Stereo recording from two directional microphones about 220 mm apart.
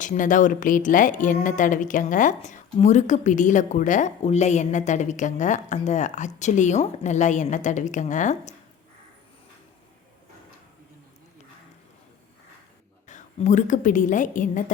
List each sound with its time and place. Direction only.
0.0 s a woman's voice: 35° left (ahead or behind)
13.1 s a woman's voice: 35° left (ahead or behind)